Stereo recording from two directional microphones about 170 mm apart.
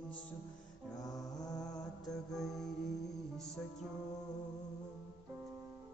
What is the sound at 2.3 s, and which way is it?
Music, centre (ahead or behind).